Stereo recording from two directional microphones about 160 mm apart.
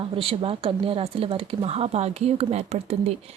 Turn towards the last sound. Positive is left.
turn(degrees=-40)  # may be behind; listen again after turning